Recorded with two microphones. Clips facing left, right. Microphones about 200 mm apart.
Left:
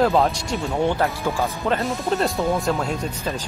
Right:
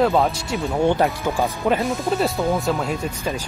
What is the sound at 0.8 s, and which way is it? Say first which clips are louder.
Speech: right 4 dB; 15° right (ahead or behind).